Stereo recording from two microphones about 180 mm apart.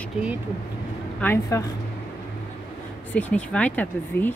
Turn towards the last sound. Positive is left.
turn(degrees=10)  # may be behind; listen again after turning